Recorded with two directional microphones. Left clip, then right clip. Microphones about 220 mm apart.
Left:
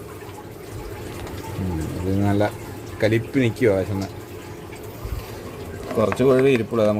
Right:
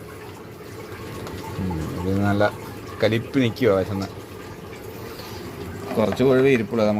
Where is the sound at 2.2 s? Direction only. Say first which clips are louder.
Right 1 dB; 15° left (ahead or behind).